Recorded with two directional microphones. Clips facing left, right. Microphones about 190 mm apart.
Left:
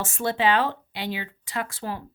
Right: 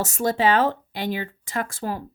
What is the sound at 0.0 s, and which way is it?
Speech, 40° right (ahead or behind).